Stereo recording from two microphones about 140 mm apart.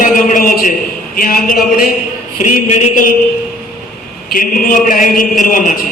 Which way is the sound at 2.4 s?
70° left (ahead or behind).